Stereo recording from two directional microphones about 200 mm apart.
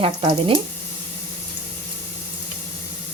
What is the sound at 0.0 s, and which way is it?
Speech, 25° right (ahead or behind).